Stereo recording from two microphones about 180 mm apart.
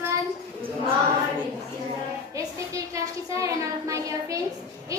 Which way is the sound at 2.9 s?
15° right (ahead or behind).